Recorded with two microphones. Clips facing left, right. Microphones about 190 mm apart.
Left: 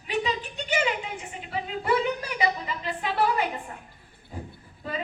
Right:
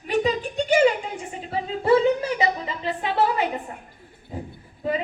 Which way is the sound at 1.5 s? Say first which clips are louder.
Right 7 dB; 30° right (ahead or behind).